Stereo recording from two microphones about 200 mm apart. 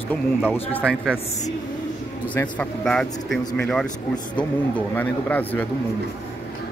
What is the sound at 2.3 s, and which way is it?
Speech, 5° left (ahead or behind).